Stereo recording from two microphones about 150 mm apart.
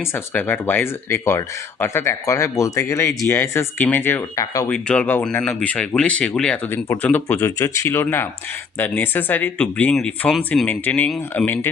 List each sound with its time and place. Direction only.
0.1 s speech: 15° left (ahead or behind)
10.7 s speech: 10° left (ahead or behind)